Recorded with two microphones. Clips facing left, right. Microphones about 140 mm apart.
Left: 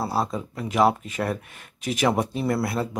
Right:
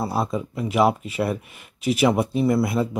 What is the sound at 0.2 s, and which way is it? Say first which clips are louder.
Speech: right 2 dB; 10° right (ahead or behind).